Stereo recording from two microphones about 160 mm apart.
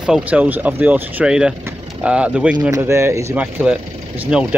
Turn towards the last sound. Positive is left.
turn(degrees=-10)  # may be behind; listen again after turning